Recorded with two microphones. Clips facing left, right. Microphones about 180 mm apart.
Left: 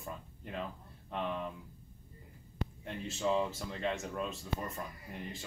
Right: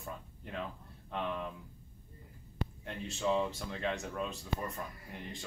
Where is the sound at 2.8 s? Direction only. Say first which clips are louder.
Even; centre (ahead or behind).